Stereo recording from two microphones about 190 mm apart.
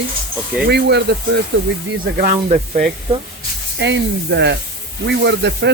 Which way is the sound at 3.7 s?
65° right (ahead or behind).